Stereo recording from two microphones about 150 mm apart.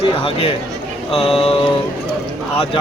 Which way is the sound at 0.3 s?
35° left (ahead or behind).